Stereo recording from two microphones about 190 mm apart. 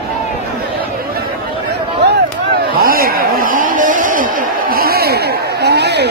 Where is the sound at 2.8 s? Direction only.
50° right (ahead or behind).